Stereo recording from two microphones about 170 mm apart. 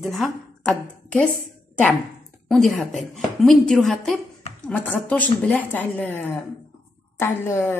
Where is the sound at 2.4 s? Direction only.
Centre (ahead or behind).